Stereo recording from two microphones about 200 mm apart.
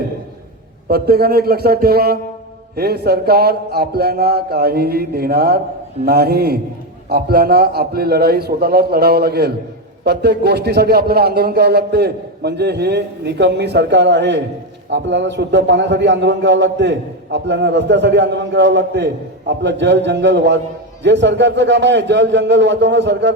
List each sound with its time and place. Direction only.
0.9 s a man's voice: 50° right (ahead or behind)